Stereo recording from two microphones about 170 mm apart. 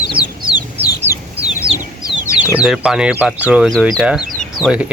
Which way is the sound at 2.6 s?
5° right (ahead or behind).